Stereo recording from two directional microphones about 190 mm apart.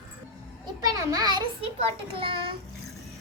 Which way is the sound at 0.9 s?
20° right (ahead or behind).